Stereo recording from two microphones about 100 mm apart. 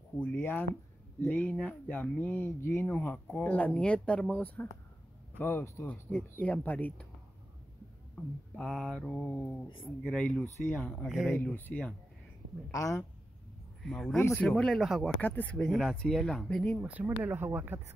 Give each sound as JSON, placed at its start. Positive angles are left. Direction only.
{"t": 0.2, "sound": "speech", "side_deg": 20}
{"t": 8.5, "sound": "speech", "side_deg": 10}
{"t": 11.1, "sound": "speech", "side_deg": -5}
{"t": 11.5, "sound": "speech", "side_deg": 15}
{"t": 12.7, "sound": "speech", "side_deg": 35}
{"t": 13.8, "sound": "speech", "side_deg": 5}
{"t": 15.1, "sound": "speech", "side_deg": 15}
{"t": 15.5, "sound": "speech", "side_deg": 5}
{"t": 16.8, "sound": "speech", "side_deg": -15}